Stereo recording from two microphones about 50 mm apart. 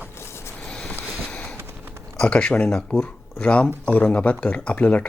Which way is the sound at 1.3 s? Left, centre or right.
Left.